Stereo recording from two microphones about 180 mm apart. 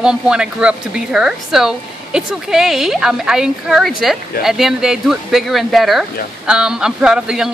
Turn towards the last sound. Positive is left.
turn(degrees=-5)  # may be behind; listen again after turning